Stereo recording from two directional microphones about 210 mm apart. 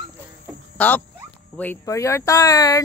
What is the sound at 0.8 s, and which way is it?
Speech, 10° left (ahead or behind).